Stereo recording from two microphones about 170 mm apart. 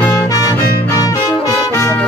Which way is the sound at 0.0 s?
20° left (ahead or behind).